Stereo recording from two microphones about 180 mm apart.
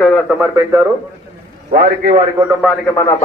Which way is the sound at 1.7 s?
55° right (ahead or behind).